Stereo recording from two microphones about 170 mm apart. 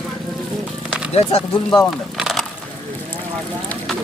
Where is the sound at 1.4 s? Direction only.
20° left (ahead or behind).